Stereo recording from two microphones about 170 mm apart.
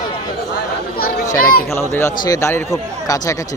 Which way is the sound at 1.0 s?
60° left (ahead or behind).